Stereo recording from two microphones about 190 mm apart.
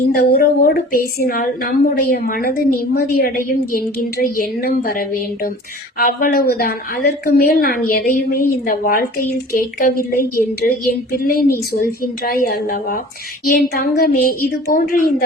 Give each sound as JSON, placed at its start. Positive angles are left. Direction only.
{"t": 0.1, "sound": "a woman's voice", "side_deg": 55}